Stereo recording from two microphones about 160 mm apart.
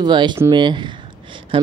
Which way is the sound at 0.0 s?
30° right (ahead or behind).